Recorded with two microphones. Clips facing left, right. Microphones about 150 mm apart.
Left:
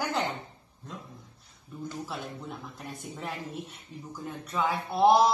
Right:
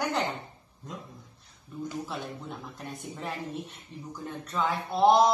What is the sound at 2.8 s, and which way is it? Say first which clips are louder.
Speech: right 1 dB; centre (ahead or behind).